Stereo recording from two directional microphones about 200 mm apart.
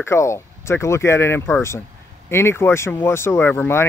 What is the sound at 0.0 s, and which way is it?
Speech, 15° left (ahead or behind).